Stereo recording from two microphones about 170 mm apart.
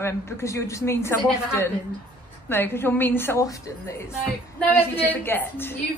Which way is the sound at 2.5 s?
15° left (ahead or behind).